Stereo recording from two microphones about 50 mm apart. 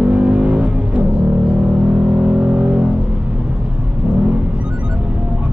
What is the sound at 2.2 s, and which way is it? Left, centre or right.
Vehicle, centre.